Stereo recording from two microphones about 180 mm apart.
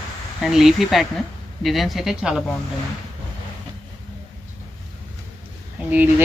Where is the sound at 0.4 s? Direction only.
Centre (ahead or behind).